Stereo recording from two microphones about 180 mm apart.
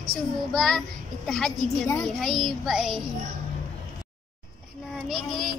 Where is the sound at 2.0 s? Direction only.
Centre (ahead or behind).